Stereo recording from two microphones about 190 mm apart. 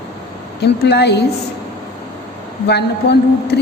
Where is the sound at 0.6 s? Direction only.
60° left (ahead or behind).